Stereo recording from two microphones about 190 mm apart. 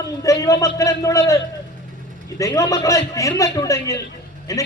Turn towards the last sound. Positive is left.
turn(degrees=15)  # may be behind; listen again after turning